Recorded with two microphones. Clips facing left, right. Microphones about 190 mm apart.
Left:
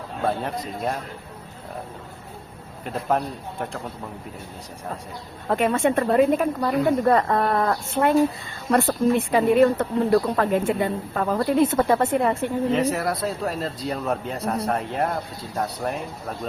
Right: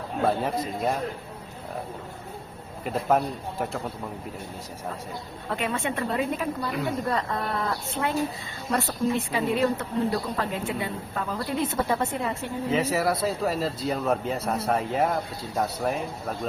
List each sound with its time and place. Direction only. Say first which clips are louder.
0.3 s speech: even; centre (ahead or behind)
2.8 s speech: right 1 dB; 5° right (ahead or behind)
5.5 s a woman's voice: left 8 dB; 45° left (ahead or behind)
12.7 s speech: left 1 dB; centre (ahead or behind)